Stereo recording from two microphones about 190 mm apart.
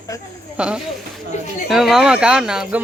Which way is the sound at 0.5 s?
5° right (ahead or behind).